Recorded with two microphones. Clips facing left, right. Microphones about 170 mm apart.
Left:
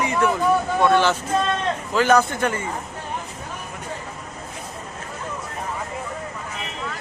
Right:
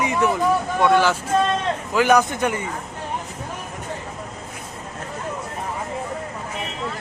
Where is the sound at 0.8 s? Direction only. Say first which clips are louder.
Right 3 dB; 10° right (ahead or behind).